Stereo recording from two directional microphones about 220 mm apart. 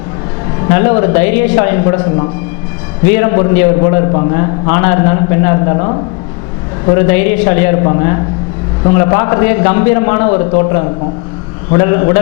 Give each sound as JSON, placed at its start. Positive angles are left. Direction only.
{"t": 0.7, "sound": "a man's voice", "side_deg": 10}
{"t": 3.0, "sound": "a man's voice", "side_deg": 15}